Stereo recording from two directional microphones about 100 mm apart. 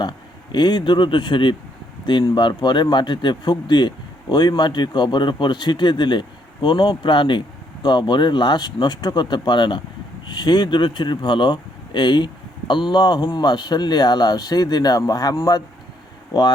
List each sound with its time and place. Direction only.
0.5 s speech: 45° left (ahead or behind)